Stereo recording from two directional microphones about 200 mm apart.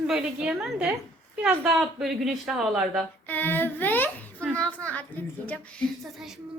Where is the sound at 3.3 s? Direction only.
10° left (ahead or behind).